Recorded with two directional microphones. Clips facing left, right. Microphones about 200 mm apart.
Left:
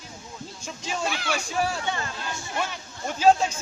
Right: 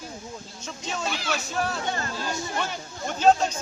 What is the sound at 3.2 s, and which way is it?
Speech, 10° left (ahead or behind).